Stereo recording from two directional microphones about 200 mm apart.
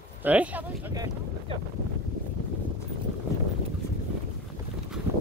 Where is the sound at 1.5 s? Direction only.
25° right (ahead or behind).